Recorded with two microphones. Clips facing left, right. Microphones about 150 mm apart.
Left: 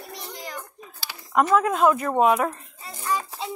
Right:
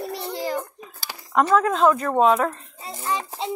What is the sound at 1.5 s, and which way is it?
Speech, 10° left (ahead or behind).